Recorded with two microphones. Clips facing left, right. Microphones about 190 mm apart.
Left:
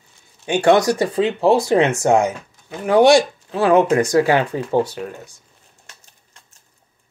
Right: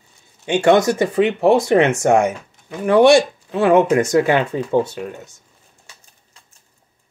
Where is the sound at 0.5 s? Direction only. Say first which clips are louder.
Right 1 dB; 20° right (ahead or behind).